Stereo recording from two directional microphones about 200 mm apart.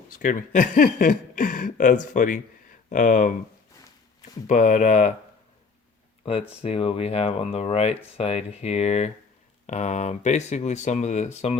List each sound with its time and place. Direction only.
0.2 s speech: 40° left (ahead or behind)
4.4 s speech: 35° left (ahead or behind)
6.6 s speech: 30° left (ahead or behind)